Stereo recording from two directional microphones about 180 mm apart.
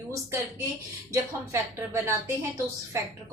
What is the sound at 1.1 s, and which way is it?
A woman's voice, 15° right (ahead or behind).